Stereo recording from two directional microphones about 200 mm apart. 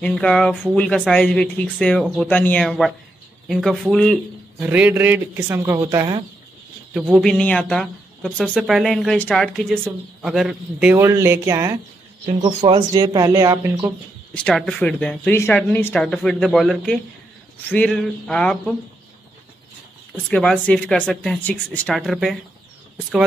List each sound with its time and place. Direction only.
0.0 s speech: 5° left (ahead or behind)
4.6 s speech: 10° right (ahead or behind)
6.9 s speech: 5° right (ahead or behind)
12.4 s speech: 25° right (ahead or behind)
14.3 s speech: 5° left (ahead or behind)
20.2 s speech: 5° left (ahead or behind)